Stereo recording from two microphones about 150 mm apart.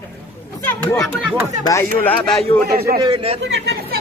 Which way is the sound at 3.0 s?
30° right (ahead or behind).